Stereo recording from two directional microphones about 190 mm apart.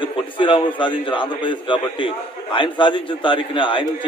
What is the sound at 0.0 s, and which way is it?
A man's voice, 25° left (ahead or behind).